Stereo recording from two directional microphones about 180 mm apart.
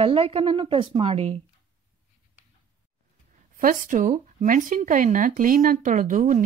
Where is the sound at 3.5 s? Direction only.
50° right (ahead or behind).